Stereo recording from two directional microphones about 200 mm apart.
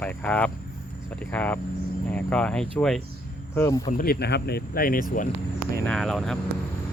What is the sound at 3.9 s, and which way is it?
Speech, 50° left (ahead or behind).